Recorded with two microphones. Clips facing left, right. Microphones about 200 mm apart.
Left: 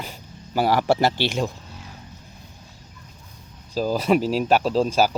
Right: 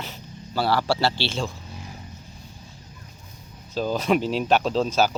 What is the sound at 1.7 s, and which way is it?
Vehicle, 10° right (ahead or behind).